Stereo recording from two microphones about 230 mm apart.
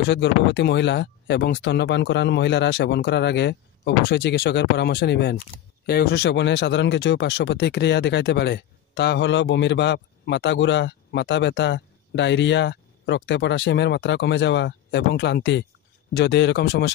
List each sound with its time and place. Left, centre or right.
0.1 s speech: left